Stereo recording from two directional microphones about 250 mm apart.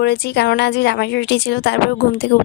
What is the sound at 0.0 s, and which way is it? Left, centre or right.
A woman's voice, left.